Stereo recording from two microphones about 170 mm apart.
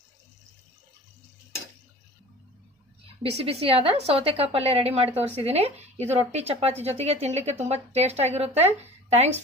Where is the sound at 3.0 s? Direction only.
35° right (ahead or behind).